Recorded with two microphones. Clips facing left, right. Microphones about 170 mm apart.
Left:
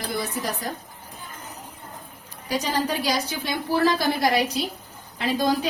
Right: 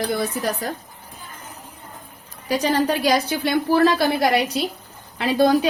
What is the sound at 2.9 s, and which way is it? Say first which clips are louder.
A woman's voice: right 6 dB; 60° right (ahead or behind).